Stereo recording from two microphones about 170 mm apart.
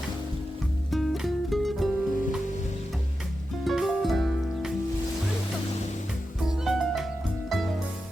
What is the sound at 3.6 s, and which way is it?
Music, centre (ahead or behind).